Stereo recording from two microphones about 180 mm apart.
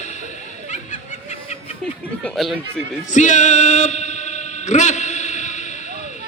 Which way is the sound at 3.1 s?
45° left (ahead or behind).